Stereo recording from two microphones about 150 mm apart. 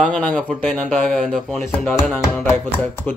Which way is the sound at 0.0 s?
10° left (ahead or behind).